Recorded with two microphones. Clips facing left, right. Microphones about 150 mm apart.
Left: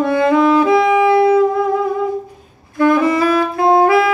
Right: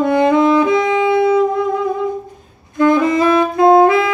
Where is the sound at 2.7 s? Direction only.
20° right (ahead or behind).